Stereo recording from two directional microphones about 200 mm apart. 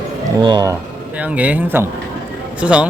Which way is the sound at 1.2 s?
5° right (ahead or behind).